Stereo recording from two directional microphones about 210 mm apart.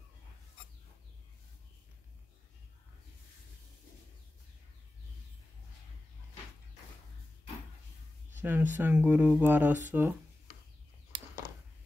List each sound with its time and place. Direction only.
8.4 s speech: 10° right (ahead or behind)